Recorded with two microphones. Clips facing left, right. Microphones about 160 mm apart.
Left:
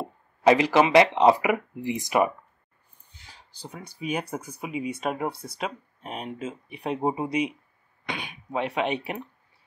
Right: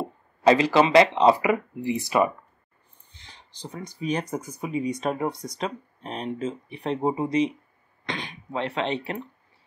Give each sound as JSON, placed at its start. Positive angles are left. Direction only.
{"t": 0.4, "sound": "speech", "side_deg": 15}